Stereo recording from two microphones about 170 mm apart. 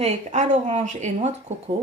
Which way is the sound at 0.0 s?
40° right (ahead or behind).